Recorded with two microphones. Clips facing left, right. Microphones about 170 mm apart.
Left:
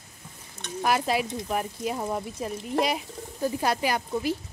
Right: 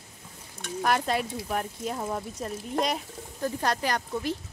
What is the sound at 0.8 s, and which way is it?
Speech, 5° left (ahead or behind).